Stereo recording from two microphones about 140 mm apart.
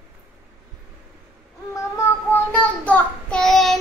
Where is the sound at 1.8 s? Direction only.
20° left (ahead or behind).